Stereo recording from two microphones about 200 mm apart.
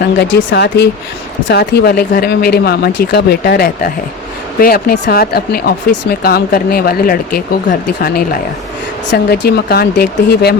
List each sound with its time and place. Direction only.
0.2 s speech: 60° left (ahead or behind); by 7.4 s 45° left (ahead or behind)
9.1 s speech: 55° left (ahead or behind)